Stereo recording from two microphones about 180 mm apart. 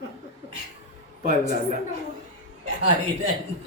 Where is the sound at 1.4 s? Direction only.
45° left (ahead or behind).